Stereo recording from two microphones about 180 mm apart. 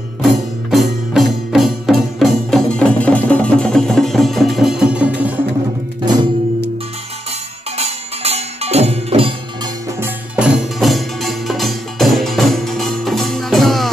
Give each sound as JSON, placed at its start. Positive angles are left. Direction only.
{"t": 0.2, "sound": "music", "side_deg": 0}
{"t": 7.7, "sound": "music", "side_deg": -35}
{"t": 9.9, "sound": "music", "side_deg": -10}